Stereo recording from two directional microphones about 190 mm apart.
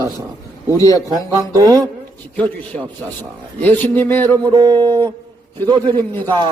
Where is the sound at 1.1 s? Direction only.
20° right (ahead or behind).